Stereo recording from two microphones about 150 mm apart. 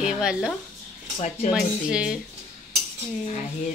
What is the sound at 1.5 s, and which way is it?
Cutlery, 5° right (ahead or behind).